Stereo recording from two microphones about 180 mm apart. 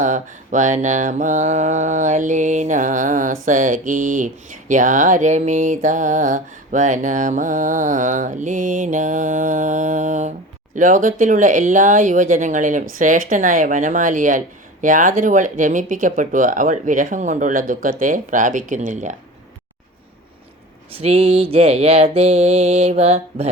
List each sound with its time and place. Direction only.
0.0 s mantra: 45° right (ahead or behind)
20.9 s mantra: 35° right (ahead or behind)